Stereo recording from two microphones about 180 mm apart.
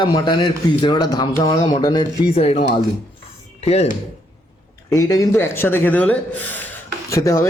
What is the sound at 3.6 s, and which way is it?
Speech, 35° left (ahead or behind).